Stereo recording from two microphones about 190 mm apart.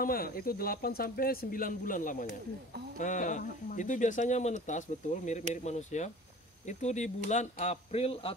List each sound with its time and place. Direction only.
0.0 s speech: 50° left (ahead or behind); by 8.3 s 30° left (ahead or behind)